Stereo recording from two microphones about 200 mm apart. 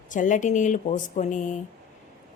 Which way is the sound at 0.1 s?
40° left (ahead or behind).